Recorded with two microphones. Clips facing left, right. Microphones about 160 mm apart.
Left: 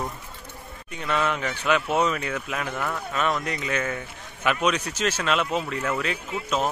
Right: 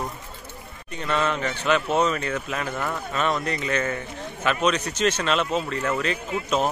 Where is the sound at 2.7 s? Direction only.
5° right (ahead or behind).